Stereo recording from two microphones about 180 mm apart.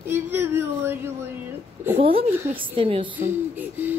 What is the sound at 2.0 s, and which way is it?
Speech, 30° right (ahead or behind).